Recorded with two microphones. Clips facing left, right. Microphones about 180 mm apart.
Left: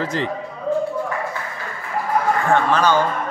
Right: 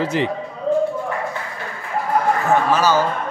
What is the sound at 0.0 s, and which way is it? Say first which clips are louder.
Speech: right 3 dB; 15° right (ahead or behind).